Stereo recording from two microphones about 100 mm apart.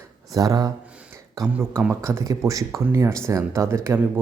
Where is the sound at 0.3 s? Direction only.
35° right (ahead or behind).